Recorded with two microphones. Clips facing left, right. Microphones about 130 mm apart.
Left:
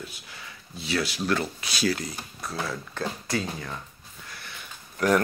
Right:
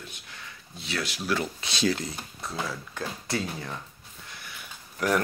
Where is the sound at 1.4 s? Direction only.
25° right (ahead or behind).